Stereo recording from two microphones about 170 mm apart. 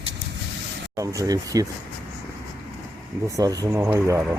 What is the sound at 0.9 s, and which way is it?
Speech, 20° right (ahead or behind).